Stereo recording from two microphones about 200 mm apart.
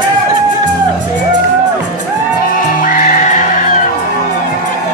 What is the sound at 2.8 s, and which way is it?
Music, 40° left (ahead or behind).